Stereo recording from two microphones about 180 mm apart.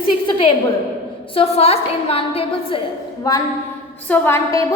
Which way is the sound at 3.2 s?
20° left (ahead or behind).